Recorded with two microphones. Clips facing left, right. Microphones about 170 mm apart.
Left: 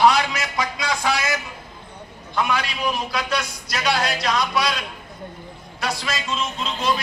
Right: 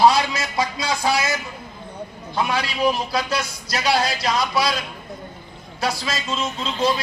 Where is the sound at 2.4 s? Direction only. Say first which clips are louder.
Right 1 dB; 30° right (ahead or behind).